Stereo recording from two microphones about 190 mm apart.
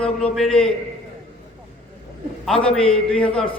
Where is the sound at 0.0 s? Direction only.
5° left (ahead or behind).